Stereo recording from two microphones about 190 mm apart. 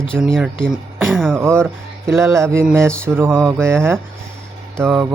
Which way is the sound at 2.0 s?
15° right (ahead or behind).